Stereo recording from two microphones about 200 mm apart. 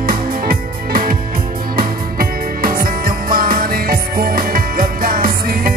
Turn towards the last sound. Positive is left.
turn(degrees=-45)  # may be behind; listen again after turning